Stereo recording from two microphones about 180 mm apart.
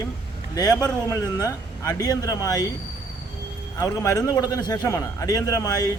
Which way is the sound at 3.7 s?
15° left (ahead or behind).